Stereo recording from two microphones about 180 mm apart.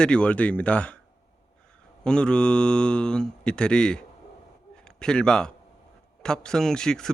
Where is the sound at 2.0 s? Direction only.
5° left (ahead or behind).